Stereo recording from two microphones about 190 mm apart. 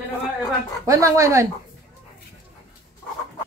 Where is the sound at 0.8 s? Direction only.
15° right (ahead or behind).